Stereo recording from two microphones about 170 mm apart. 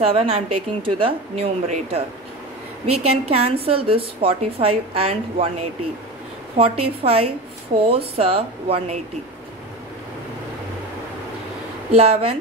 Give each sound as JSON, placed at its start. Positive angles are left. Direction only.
{"t": 0.0, "sound": "a woman's voice", "side_deg": -35}
{"t": 11.9, "sound": "a woman's voice", "side_deg": -35}